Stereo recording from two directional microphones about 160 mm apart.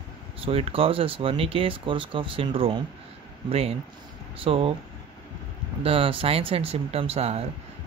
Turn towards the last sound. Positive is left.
turn(degrees=-40)  # may be behind; listen again after turning